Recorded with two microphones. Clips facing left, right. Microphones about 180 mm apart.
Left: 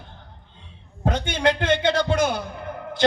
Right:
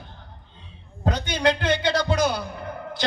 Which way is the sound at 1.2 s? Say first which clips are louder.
Left 1 dB; 50° left (ahead or behind).